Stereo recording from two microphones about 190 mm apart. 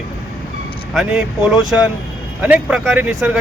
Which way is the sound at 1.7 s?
5° right (ahead or behind).